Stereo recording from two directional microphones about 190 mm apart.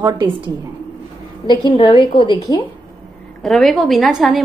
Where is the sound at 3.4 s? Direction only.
Centre (ahead or behind).